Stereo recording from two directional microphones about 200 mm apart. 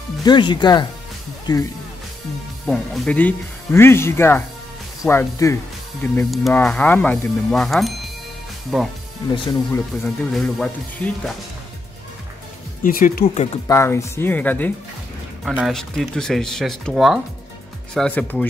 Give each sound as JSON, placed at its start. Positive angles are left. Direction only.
{"t": 0.2, "sound": "speech", "side_deg": 20}
{"t": 2.6, "sound": "speech", "side_deg": 0}
{"t": 9.3, "sound": "speech", "side_deg": 25}
{"t": 9.7, "sound": "speech", "side_deg": 5}
{"t": 12.8, "sound": "speech", "side_deg": 45}
{"t": 13.2, "sound": "speech", "side_deg": 30}
{"t": 13.7, "sound": "speech", "side_deg": 15}